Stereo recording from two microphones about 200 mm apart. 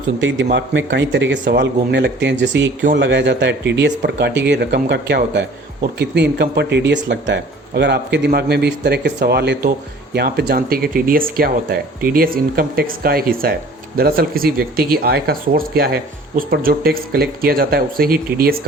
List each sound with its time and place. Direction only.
0.2 s a man's voice: 65° right (ahead or behind); by 18.5 s 50° right (ahead or behind)